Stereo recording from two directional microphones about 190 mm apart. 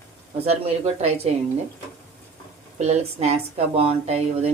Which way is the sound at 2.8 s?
35° right (ahead or behind).